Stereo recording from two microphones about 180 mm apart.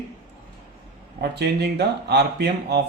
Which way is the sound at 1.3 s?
65° right (ahead or behind).